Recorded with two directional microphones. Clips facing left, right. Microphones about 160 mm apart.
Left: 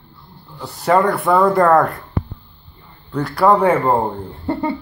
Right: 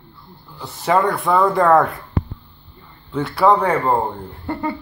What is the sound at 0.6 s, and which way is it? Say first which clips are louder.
Speech: left 2 dB; centre (ahead or behind).